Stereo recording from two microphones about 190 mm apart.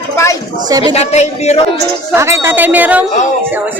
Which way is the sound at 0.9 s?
35° left (ahead or behind).